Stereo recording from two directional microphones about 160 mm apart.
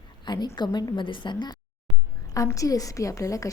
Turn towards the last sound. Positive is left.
turn(degrees=20)  # may be behind; listen again after turning